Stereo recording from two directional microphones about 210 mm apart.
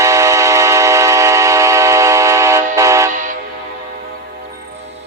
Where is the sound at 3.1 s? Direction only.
35° right (ahead or behind).